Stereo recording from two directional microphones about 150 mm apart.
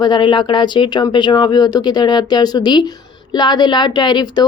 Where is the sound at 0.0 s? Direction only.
30° left (ahead or behind).